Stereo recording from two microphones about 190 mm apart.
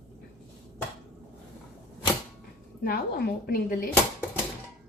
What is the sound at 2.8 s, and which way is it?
A woman's voice, 55° left (ahead or behind).